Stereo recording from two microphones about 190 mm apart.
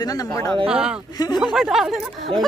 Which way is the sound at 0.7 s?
5° right (ahead or behind).